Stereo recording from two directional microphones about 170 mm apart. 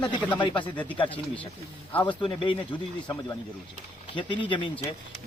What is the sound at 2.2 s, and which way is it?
Speech, 30° left (ahead or behind).